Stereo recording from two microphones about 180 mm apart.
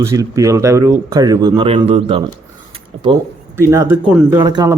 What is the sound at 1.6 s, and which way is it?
Speech, 30° right (ahead or behind).